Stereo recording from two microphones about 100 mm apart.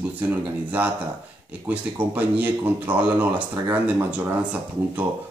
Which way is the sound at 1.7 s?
15° right (ahead or behind).